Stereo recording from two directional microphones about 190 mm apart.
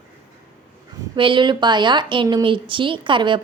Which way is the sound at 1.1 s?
25° right (ahead or behind).